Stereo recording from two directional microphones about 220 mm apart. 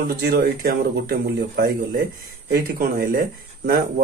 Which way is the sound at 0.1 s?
45° right (ahead or behind).